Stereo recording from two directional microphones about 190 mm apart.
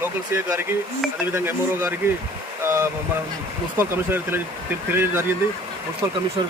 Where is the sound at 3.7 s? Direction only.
10° right (ahead or behind).